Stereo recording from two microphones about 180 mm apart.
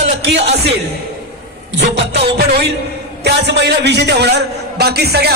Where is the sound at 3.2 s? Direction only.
70° right (ahead or behind).